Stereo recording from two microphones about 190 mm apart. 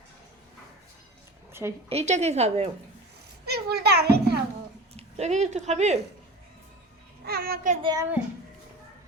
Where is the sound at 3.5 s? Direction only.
60° right (ahead or behind).